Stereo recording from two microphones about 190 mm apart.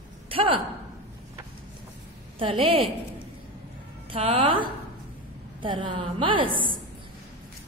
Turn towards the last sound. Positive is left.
turn(degrees=-25)  # may be behind; listen again after turning